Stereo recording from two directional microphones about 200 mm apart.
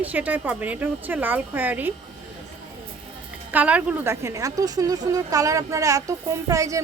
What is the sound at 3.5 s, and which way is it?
A woman's voice, 5° right (ahead or behind).